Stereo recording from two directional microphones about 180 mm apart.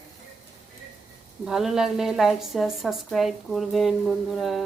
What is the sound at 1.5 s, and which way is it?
A woman's voice, centre (ahead or behind).